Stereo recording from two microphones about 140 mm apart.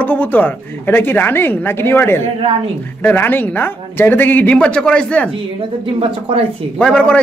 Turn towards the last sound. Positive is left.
turn(degrees=5)  # may be behind; listen again after turning